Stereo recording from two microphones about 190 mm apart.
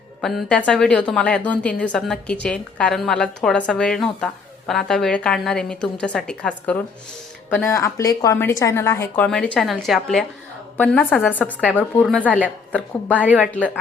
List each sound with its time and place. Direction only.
0.2 s a woman's voice: centre (ahead or behind)
7.7 s a woman's voice: 15° left (ahead or behind)
11.6 s a woman's voice: 5° right (ahead or behind)